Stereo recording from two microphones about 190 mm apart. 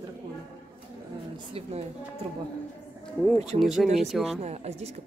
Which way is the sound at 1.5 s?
30° right (ahead or behind).